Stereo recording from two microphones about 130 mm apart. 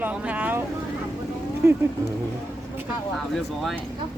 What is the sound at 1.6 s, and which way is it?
Speech, 20° right (ahead or behind).